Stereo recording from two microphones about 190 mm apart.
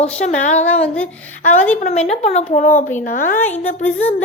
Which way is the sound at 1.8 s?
35° left (ahead or behind).